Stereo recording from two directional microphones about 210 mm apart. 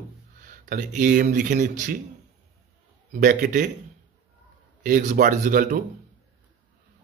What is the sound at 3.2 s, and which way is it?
Speech, 40° right (ahead or behind).